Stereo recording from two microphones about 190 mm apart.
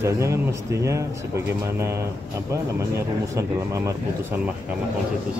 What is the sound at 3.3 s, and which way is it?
Speech, 15° right (ahead or behind).